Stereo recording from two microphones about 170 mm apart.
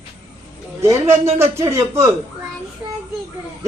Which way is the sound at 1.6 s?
15° right (ahead or behind).